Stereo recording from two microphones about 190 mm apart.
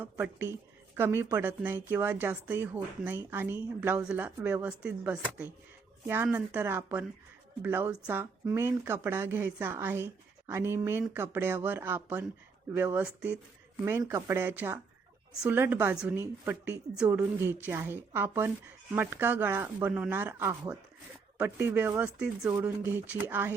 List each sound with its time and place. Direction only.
0.0 s speech: 10° right (ahead or behind)